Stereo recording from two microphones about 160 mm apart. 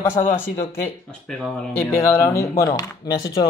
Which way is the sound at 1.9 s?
20° left (ahead or behind).